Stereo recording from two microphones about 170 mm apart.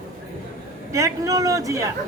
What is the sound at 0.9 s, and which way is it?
Speech, 20° right (ahead or behind).